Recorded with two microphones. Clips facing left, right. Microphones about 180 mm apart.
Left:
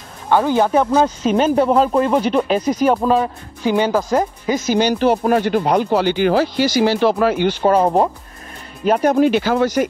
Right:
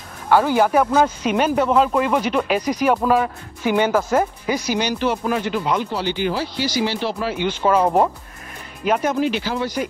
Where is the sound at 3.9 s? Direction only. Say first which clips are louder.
Left 1 dB; 15° left (ahead or behind).